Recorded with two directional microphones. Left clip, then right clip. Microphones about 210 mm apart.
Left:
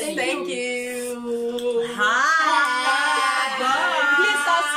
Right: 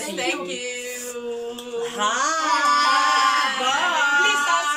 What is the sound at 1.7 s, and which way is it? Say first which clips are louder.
Speech: left 1 dB; 5° right (ahead or behind).